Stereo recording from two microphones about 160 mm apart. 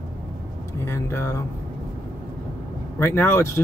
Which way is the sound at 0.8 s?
15° left (ahead or behind).